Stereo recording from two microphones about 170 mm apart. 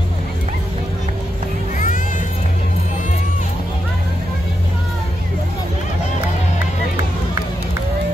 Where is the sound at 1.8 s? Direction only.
50° left (ahead or behind).